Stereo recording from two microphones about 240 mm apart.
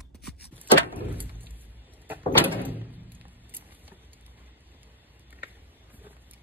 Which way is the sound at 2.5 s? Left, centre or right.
Centre.